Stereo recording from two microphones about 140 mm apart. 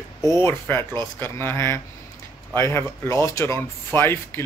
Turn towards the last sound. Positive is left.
turn(degrees=15)  # may be behind; listen again after turning